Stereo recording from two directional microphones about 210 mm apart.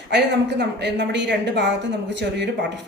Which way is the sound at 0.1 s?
55° right (ahead or behind).